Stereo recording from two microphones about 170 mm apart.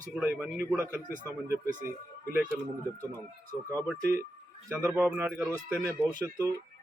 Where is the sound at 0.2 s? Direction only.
10° right (ahead or behind).